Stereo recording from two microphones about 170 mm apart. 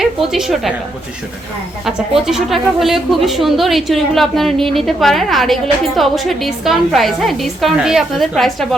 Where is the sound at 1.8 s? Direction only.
Centre (ahead or behind).